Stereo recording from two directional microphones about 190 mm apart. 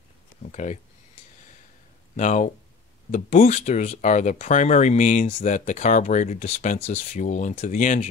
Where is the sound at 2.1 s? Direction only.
40° left (ahead or behind).